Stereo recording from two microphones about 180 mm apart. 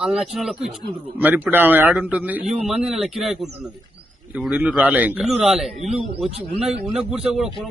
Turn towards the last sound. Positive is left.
turn(degrees=0)  # may be behind; listen again after turning